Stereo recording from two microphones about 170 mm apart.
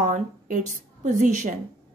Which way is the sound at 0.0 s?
50° right (ahead or behind).